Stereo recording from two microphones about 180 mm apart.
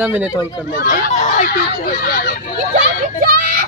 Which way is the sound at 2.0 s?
55° left (ahead or behind).